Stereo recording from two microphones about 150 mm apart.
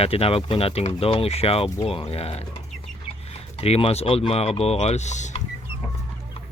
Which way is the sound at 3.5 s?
40° left (ahead or behind).